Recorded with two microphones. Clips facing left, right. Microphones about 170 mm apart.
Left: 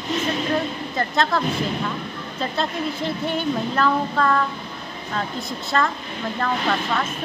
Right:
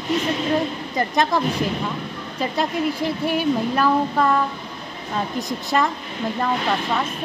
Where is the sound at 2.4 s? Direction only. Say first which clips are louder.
Right 3 dB; 10° right (ahead or behind).